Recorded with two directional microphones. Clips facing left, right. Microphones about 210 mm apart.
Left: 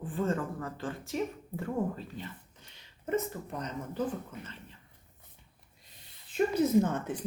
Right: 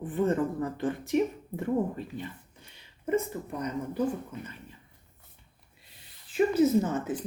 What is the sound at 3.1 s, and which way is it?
Speech, 10° right (ahead or behind).